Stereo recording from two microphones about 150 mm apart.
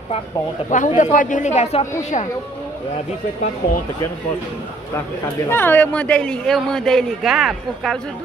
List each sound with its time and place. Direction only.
0.7 s a man's voice: 55° left (ahead or behind)
5.5 s a man's voice: 15° left (ahead or behind)